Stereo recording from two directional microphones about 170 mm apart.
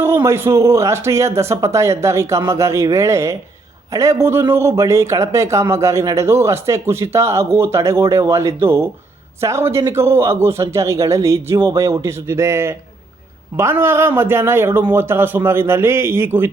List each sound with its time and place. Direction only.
0.0 s speech: 15° right (ahead or behind)